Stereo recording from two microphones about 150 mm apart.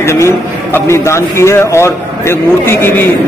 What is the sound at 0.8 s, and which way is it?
A man's voice, 20° left (ahead or behind).